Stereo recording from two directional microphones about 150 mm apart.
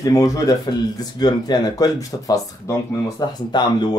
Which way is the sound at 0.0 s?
25° left (ahead or behind).